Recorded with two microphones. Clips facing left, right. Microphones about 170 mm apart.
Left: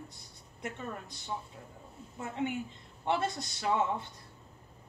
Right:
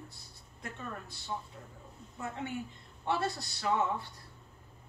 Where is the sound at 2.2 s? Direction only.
20° left (ahead or behind).